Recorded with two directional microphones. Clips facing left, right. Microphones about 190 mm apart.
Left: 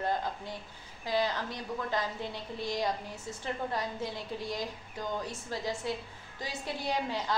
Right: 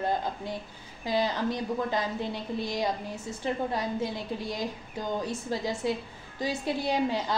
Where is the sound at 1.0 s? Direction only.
15° right (ahead or behind).